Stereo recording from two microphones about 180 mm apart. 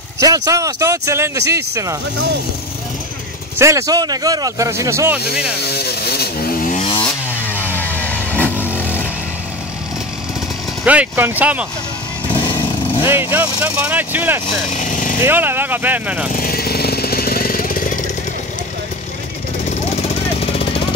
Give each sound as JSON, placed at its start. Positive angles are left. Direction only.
{"t": 0.2, "sound": "speech", "side_deg": -20}
{"t": 3.5, "sound": "speech", "side_deg": -15}
{"t": 5.7, "sound": "chainsaw", "side_deg": 60}
{"t": 7.5, "sound": "vehicle", "side_deg": 10}
{"t": 10.8, "sound": "speech", "side_deg": -5}
{"t": 13.0, "sound": "speech", "side_deg": -10}
{"t": 14.7, "sound": "speech", "side_deg": 45}
{"t": 15.2, "sound": "speech", "side_deg": -10}
{"t": 16.3, "sound": "jackhammer", "side_deg": 55}
{"t": 19.7, "sound": "vehicle", "side_deg": 35}